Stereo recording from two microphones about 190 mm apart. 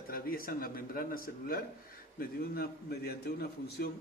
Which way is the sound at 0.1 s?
50° left (ahead or behind).